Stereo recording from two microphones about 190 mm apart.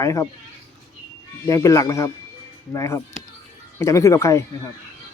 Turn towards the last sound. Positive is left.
turn(degrees=15)  # may be behind; listen again after turning